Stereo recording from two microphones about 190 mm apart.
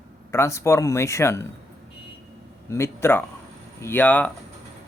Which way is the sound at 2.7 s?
15° left (ahead or behind).